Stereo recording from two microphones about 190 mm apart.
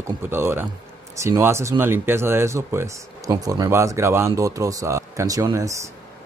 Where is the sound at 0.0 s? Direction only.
10° right (ahead or behind).